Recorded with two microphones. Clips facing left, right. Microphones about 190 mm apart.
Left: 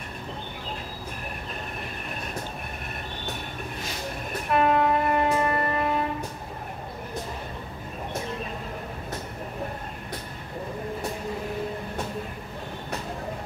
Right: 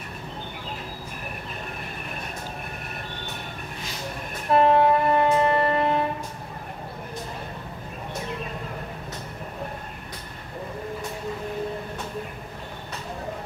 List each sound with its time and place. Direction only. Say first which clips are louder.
4.5 s music: right 4 dB; 30° right (ahead or behind)